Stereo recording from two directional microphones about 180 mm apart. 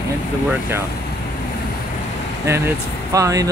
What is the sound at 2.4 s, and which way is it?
Speech, 15° right (ahead or behind).